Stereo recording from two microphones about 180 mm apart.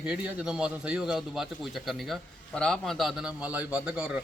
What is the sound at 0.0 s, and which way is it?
A man's voice, 5° right (ahead or behind).